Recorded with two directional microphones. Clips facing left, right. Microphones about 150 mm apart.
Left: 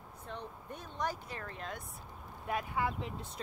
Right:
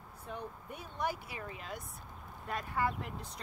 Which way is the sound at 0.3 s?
10° right (ahead or behind).